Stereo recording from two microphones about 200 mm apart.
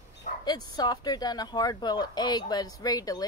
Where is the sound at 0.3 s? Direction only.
40° left (ahead or behind).